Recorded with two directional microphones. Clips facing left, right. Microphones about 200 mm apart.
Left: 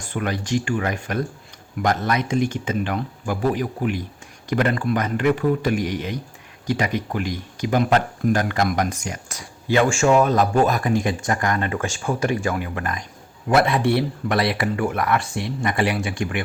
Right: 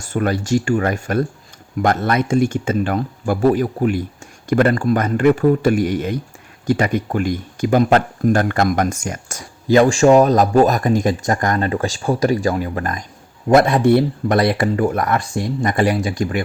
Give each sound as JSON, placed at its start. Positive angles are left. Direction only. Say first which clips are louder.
{"t": 0.0, "sound": "speech", "louder": "right 6 dB", "side_deg": -45}